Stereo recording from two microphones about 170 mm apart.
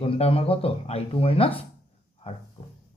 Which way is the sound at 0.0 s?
35° left (ahead or behind).